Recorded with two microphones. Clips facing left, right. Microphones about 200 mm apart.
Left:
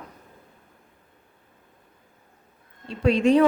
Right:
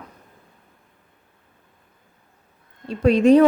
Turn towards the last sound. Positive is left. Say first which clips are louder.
# right 5 dB
turn(degrees=-40)  # may be behind; listen again after turning